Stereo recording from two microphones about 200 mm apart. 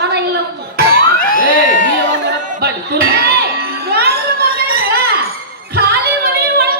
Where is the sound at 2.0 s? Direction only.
60° right (ahead or behind).